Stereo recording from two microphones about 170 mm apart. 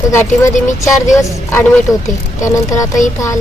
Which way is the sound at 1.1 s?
15° left (ahead or behind).